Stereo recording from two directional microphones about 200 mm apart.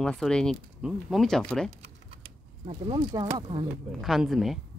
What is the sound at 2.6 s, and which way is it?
Speech, 25° right (ahead or behind).